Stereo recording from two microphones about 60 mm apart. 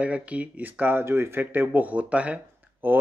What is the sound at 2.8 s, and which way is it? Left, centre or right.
Speech, right.